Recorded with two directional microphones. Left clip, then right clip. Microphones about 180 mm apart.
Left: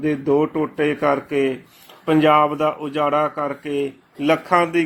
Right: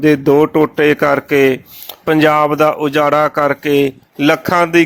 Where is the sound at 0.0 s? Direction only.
45° right (ahead or behind).